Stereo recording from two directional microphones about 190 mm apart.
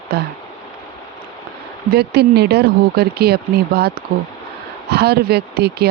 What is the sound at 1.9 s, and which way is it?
Speech, 55° right (ahead or behind).